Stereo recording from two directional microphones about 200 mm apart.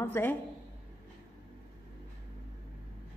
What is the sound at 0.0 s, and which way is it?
Speech, 10° left (ahead or behind).